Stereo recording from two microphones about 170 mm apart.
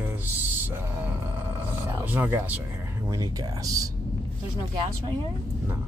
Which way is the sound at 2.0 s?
10° right (ahead or behind).